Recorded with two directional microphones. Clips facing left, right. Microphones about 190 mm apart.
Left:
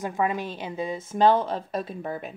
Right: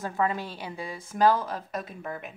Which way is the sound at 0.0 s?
15° left (ahead or behind).